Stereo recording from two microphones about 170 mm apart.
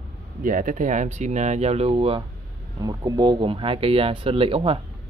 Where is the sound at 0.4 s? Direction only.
50° right (ahead or behind); by 4.7 s 30° right (ahead or behind).